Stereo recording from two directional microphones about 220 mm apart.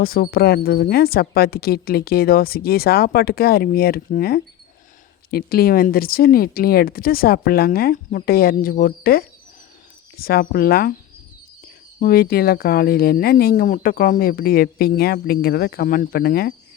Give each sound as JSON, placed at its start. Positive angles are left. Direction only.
{"t": 0.0, "sound": "speech", "side_deg": 40}
{"t": 11.9, "sound": "speech", "side_deg": 40}